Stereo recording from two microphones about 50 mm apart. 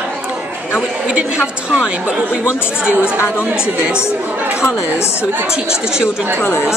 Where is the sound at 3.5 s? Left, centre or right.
Centre.